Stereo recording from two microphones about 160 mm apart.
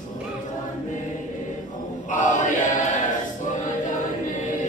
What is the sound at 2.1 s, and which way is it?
Chant, 55° left (ahead or behind).